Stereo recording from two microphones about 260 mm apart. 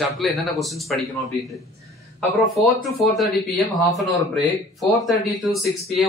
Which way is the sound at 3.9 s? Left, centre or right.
Centre.